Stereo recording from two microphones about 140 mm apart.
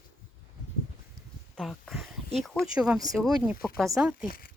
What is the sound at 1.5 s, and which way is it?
Speech, centre (ahead or behind).